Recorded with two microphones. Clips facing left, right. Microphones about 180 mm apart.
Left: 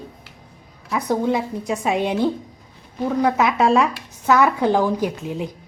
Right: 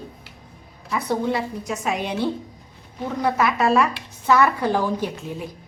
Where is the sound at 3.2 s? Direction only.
15° left (ahead or behind).